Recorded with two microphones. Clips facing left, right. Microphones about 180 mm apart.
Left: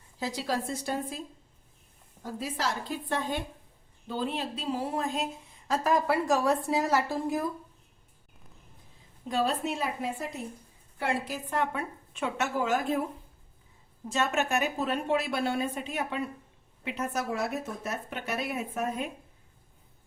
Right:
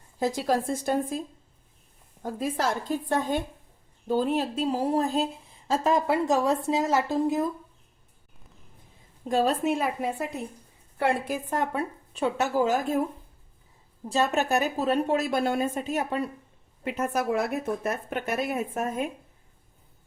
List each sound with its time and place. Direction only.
0.2 s speech: 50° right (ahead or behind)
2.2 s a woman's voice: 50° right (ahead or behind); by 7.4 s 20° right (ahead or behind)
9.3 s a woman's voice: 45° right (ahead or behind)
14.1 s a woman's voice: 35° right (ahead or behind)